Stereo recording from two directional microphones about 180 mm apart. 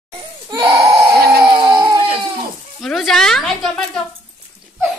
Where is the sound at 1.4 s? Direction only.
20° right (ahead or behind).